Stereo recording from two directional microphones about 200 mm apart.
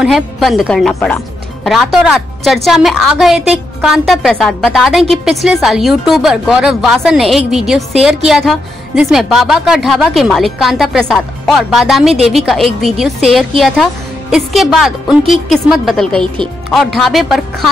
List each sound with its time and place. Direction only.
0.0 s speech: centre (ahead or behind)